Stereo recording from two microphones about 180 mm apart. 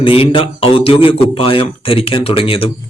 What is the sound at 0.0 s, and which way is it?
A man's voice, 30° left (ahead or behind).